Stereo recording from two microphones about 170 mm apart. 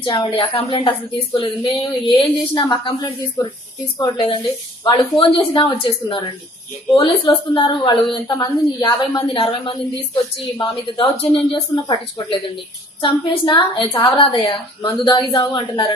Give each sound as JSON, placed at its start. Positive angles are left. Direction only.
{"t": 0.0, "sound": "a woman's voice", "side_deg": 30}
{"t": 4.8, "sound": "a woman's voice", "side_deg": 30}